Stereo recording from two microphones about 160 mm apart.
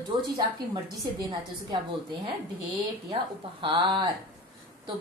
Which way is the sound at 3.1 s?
30° right (ahead or behind).